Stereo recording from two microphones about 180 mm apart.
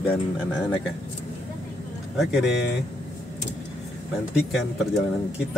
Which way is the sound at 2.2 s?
Centre (ahead or behind).